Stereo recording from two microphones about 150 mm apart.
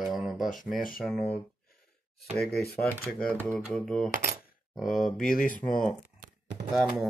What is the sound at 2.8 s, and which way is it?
Speech, 10° left (ahead or behind).